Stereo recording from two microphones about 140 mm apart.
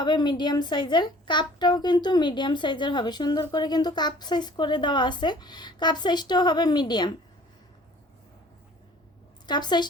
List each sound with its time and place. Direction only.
0.0 s a woman's voice: 35° left (ahead or behind)
9.5 s a woman's voice: 30° left (ahead or behind)